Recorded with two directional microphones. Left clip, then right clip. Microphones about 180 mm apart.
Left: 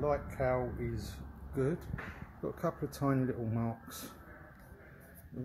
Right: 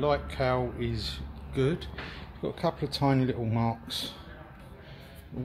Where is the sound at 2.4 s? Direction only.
15° left (ahead or behind).